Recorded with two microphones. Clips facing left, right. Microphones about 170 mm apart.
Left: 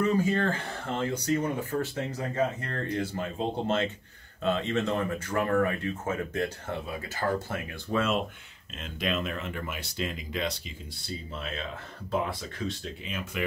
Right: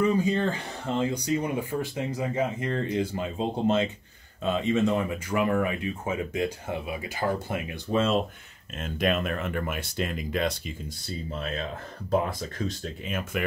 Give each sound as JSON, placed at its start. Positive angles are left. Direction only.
{"t": 0.0, "sound": "speech", "side_deg": -20}
{"t": 8.8, "sound": "speech", "side_deg": -50}
{"t": 12.1, "sound": "speech", "side_deg": -40}